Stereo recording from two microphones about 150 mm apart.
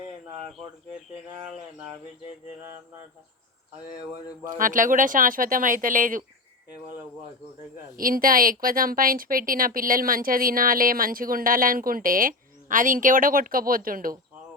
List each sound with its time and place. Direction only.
4.5 s speech: 65° right (ahead or behind)
7.9 s speech: 70° right (ahead or behind)